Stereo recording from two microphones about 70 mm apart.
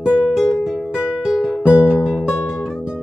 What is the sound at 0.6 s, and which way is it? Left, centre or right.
Music, centre.